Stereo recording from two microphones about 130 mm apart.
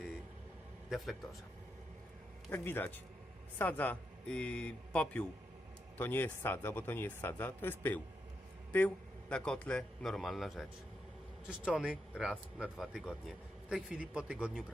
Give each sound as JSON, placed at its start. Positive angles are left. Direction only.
{"t": 0.9, "sound": "speech", "side_deg": 0}
{"t": 2.5, "sound": "a man's voice", "side_deg": 15}